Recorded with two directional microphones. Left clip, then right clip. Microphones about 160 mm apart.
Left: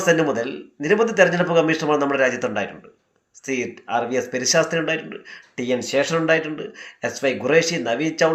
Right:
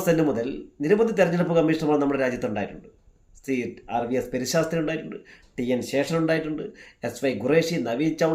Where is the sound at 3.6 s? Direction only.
40° right (ahead or behind).